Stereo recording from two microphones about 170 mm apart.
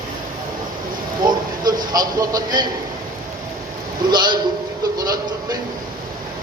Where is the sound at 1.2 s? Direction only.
25° right (ahead or behind).